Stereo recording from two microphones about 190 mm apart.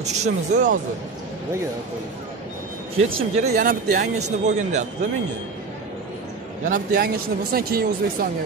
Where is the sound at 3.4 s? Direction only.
45° right (ahead or behind).